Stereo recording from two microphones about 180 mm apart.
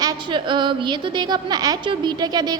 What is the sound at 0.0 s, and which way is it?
A woman's voice, 25° right (ahead or behind).